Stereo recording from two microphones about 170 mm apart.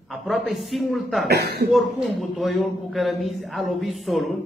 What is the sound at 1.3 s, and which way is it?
Speech, 70° right (ahead or behind).